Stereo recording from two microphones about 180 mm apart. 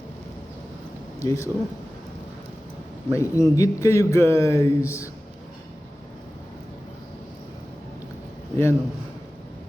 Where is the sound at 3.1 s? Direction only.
15° left (ahead or behind).